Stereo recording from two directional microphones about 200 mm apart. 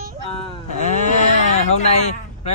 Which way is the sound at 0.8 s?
35° left (ahead or behind).